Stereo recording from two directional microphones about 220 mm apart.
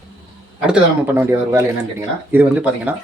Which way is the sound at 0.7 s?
10° right (ahead or behind).